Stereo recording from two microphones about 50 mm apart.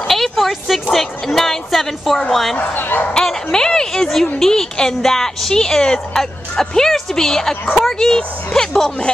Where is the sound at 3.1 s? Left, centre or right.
Centre.